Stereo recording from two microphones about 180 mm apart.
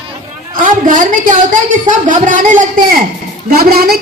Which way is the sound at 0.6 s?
45° right (ahead or behind).